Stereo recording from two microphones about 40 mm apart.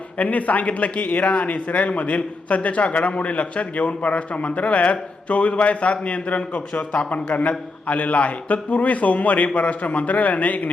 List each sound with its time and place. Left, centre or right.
0.2 s a man's voice: left